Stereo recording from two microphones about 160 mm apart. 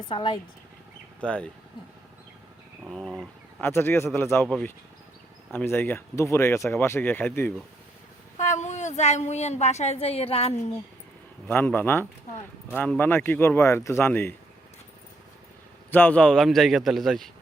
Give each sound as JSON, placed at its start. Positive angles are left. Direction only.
{"t": 0.1, "sound": "speech", "side_deg": 30}
{"t": 1.2, "sound": "speech", "side_deg": 5}
{"t": 2.8, "sound": "speech", "side_deg": 5}
{"t": 4.4, "sound": "a man's voice", "side_deg": 5}
{"t": 8.4, "sound": "a woman's voice", "side_deg": 50}
{"t": 11.4, "sound": "speech", "side_deg": 10}
{"t": 15.9, "sound": "a man's voice", "side_deg": 10}